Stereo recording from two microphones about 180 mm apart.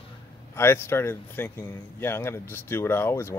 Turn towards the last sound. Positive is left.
turn(degrees=15)  # may be behind; listen again after turning